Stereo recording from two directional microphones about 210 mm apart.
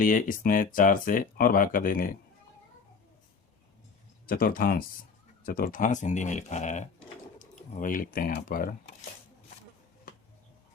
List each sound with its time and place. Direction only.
0.0 s speech: 40° left (ahead or behind)
4.3 s speech: 45° left (ahead or behind)